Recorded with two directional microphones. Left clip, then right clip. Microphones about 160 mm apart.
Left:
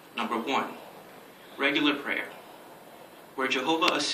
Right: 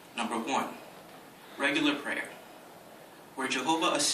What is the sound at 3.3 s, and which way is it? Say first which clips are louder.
Speech: left 3 dB; 90° right.